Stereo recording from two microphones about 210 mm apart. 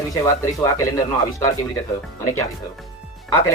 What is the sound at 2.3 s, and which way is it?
Speech, 15° left (ahead or behind).